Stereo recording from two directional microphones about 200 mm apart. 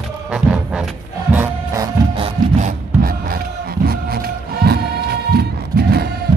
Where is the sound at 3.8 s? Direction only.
50° right (ahead or behind).